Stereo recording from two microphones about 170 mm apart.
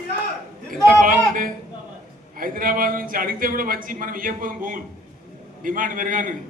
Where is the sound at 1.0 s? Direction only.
55° right (ahead or behind).